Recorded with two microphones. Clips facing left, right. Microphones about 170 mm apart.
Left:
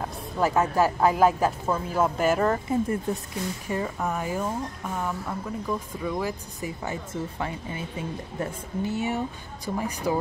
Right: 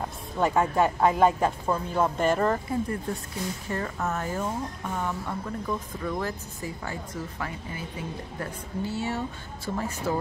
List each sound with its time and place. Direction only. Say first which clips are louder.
0.4 s a woman's voice: left 1 dB; centre (ahead or behind)
2.7 s speech: left 3 dB; 20° left (ahead or behind)
6.8 s speech: left 3 dB; 25° left (ahead or behind)